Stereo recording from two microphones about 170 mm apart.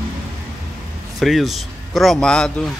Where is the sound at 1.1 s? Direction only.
Centre (ahead or behind).